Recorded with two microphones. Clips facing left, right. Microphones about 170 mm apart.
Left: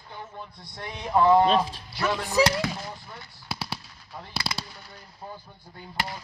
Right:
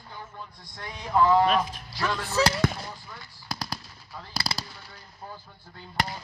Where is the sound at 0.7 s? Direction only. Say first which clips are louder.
Left 1 dB; 20° left (ahead or behind).